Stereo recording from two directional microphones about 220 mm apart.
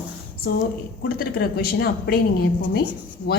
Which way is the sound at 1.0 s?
45° left (ahead or behind).